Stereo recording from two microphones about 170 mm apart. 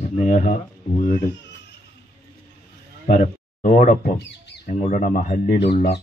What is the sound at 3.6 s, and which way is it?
Speech, 45° left (ahead or behind).